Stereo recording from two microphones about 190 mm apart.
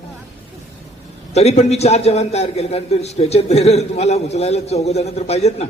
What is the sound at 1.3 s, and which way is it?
A man's voice, 35° left (ahead or behind).